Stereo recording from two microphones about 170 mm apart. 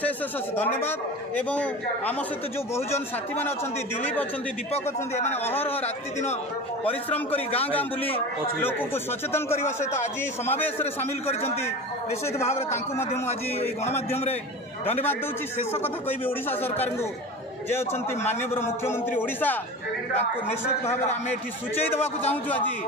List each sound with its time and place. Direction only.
0.6 s a man's voice: 10° left (ahead or behind)
4.0 s a man's voice: 10° left (ahead or behind)
4.7 s a man's voice: 40° left (ahead or behind)
5.4 s a man's voice: 10° left (ahead or behind)
6.8 s a man's voice: 10° left (ahead or behind)
9.6 s a man's voice: 40° left (ahead or behind)
10.4 s a man's voice: 10° left (ahead or behind)
12.3 s a man's voice: 15° left (ahead or behind)
14.9 s a man's voice: 10° left (ahead or behind)
17.7 s a man's voice: 15° left (ahead or behind)
22.3 s a man's voice: 10° left (ahead or behind)